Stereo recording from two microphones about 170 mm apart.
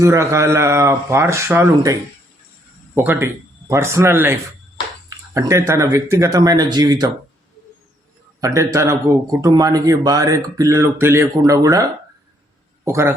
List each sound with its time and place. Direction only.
0.0 s speech: 15° right (ahead or behind)
8.4 s a man's voice: 20° right (ahead or behind)